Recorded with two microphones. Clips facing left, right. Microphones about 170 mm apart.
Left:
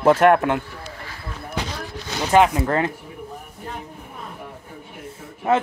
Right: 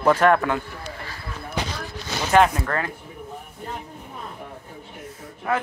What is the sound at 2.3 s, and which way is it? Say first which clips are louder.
Speech: left 2 dB; 20° left (ahead or behind).